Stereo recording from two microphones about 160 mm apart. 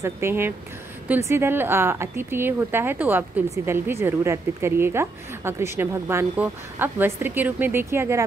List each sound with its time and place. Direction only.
0.0 s a woman's voice: 15° right (ahead or behind)